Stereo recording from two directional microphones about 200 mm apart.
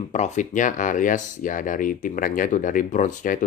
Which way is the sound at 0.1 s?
35° left (ahead or behind).